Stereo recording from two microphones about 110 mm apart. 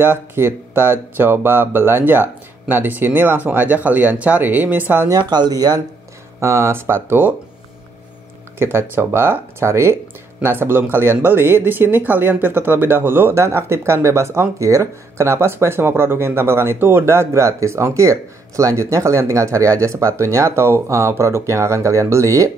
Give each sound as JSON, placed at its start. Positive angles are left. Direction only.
{"t": 0.0, "sound": "speech", "side_deg": -20}
{"t": 5.1, "sound": "speech", "side_deg": -40}
{"t": 6.4, "sound": "speech", "side_deg": -25}
{"t": 8.5, "sound": "speech", "side_deg": -20}